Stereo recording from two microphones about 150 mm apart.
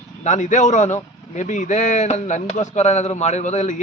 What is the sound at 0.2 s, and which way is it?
A man's voice, 50° left (ahead or behind).